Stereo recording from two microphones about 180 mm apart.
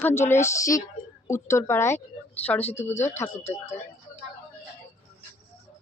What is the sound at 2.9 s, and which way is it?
Speech, 40° left (ahead or behind).